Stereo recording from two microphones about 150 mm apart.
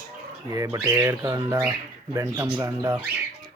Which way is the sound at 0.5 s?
20° right (ahead or behind).